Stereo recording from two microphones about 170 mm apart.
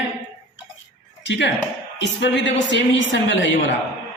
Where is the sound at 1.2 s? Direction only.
90° left.